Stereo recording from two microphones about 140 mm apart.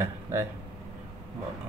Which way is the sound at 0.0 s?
20° right (ahead or behind).